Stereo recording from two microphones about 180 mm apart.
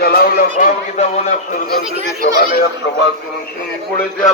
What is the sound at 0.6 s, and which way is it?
Speech, 40° left (ahead or behind).